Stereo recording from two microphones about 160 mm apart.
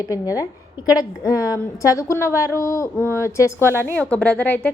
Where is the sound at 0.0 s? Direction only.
20° left (ahead or behind).